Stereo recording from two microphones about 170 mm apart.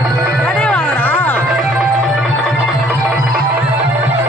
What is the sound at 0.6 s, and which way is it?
Music, 10° left (ahead or behind).